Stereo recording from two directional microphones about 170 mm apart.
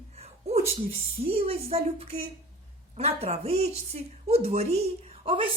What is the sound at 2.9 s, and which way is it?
A woman's voice, 40° right (ahead or behind).